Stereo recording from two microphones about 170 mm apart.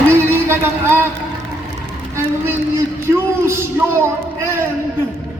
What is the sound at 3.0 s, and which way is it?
Speech, 15° right (ahead or behind).